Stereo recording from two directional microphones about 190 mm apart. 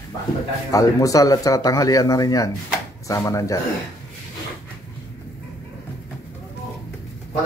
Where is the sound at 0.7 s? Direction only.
15° left (ahead or behind).